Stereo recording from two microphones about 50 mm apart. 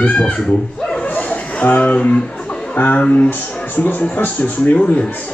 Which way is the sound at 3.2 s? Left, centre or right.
Left.